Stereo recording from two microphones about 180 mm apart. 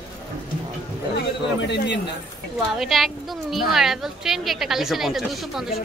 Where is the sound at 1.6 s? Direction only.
70° left (ahead or behind).